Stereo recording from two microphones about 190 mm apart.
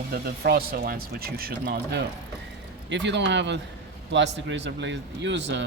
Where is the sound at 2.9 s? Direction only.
70° right (ahead or behind).